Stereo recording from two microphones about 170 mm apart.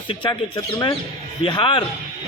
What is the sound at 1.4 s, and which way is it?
Speech, 30° left (ahead or behind).